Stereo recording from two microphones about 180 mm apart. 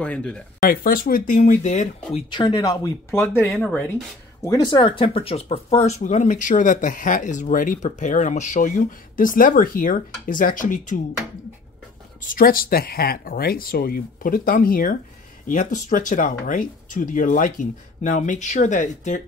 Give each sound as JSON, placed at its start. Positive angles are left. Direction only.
{"t": 0.0, "sound": "speech", "side_deg": 5}
{"t": 0.6, "sound": "speech", "side_deg": 55}
{"t": 2.3, "sound": "speech", "side_deg": 25}
{"t": 4.4, "sound": "speech", "side_deg": 20}
{"t": 12.2, "sound": "speech", "side_deg": 50}